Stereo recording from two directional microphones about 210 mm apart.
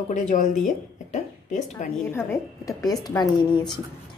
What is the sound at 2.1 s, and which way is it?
A woman's voice, 15° left (ahead or behind).